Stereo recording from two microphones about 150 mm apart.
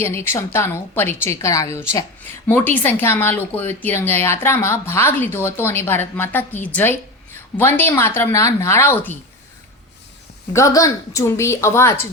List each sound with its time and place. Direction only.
0.0 s speech: 15° left (ahead or behind)
10.5 s a woman's voice: 20° left (ahead or behind)